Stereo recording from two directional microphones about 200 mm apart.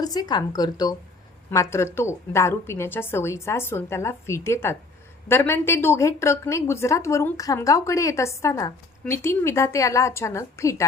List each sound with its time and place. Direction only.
0.0 s a woman's voice: 20° left (ahead or behind)